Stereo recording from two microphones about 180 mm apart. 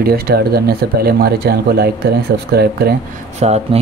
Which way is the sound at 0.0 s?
60° right (ahead or behind).